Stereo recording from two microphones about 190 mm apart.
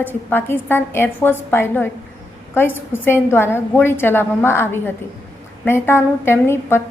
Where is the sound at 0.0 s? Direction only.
10° left (ahead or behind).